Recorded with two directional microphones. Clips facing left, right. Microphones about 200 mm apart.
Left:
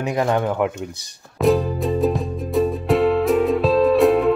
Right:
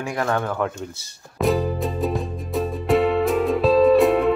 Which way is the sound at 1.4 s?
Centre (ahead or behind).